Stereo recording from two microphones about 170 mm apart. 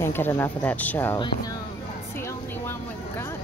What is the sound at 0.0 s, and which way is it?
Speech, 15° left (ahead or behind).